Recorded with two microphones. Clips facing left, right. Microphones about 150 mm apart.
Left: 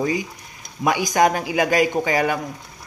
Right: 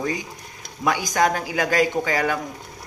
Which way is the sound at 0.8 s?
15° left (ahead or behind).